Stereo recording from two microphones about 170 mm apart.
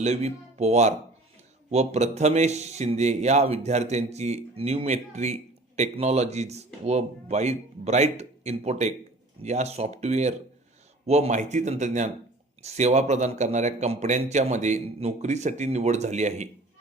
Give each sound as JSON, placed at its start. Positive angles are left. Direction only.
{"t": 0.0, "sound": "a man's voice", "side_deg": -40}